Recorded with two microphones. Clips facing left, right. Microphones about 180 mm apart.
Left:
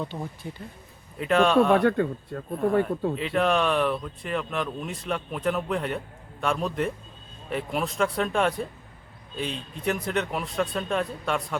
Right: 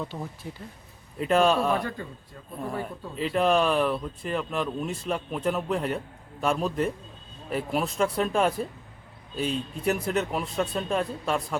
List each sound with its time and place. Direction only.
0.0 s speech: centre (ahead or behind)
1.8 s speech: 60° left (ahead or behind)
3.2 s speech: centre (ahead or behind)